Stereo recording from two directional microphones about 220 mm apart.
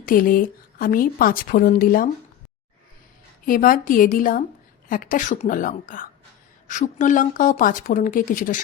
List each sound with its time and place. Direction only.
0.0 s a woman's voice: 40° left (ahead or behind)
3.4 s a woman's voice: 40° left (ahead or behind)